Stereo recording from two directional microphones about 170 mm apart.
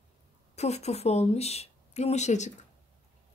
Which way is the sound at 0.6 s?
40° left (ahead or behind).